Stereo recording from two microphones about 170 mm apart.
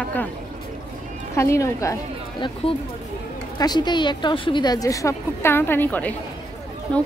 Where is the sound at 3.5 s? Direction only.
25° left (ahead or behind); by 6.1 s 10° left (ahead or behind).